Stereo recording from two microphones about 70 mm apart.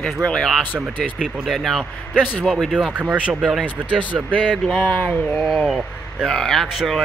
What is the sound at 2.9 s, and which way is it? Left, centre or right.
Speech, centre.